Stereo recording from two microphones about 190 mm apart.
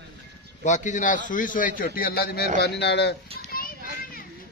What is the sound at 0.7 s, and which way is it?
A man's voice, 40° left (ahead or behind).